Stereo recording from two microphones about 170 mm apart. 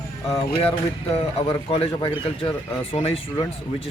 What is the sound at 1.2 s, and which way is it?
Speech, 35° left (ahead or behind).